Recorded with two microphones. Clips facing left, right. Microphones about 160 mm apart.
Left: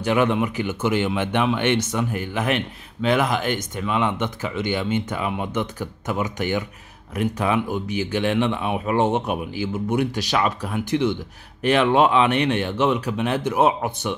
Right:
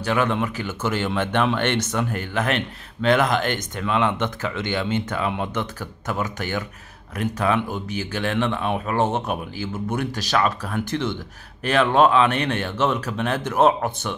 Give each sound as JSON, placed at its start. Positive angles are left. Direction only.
{"t": 0.0, "sound": "speech", "side_deg": 20}